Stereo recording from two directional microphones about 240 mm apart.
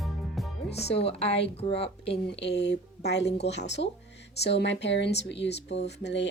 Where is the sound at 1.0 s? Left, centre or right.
Left.